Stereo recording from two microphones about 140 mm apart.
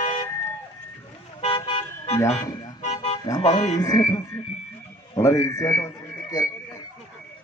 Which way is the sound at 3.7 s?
25° left (ahead or behind).